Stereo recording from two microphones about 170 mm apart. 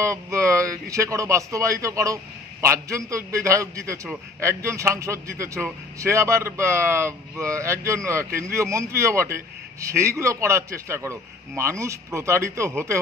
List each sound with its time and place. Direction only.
0.0 s a man's voice: 15° right (ahead or behind)